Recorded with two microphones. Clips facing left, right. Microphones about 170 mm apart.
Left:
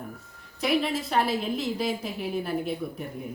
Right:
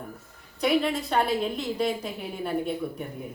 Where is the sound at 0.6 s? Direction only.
Centre (ahead or behind).